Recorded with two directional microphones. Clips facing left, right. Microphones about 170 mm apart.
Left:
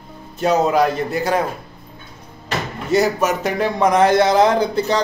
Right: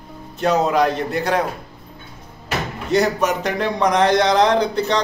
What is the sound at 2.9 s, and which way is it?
Speech, centre (ahead or behind).